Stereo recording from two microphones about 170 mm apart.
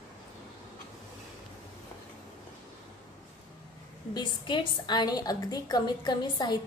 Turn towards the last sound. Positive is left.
turn(degrees=25)  # may be behind; listen again after turning